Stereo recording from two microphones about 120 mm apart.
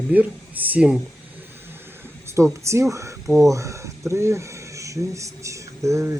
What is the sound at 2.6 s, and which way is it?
Speech, 25° right (ahead or behind).